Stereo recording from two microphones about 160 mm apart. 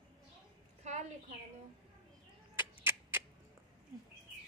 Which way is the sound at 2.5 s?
15° right (ahead or behind).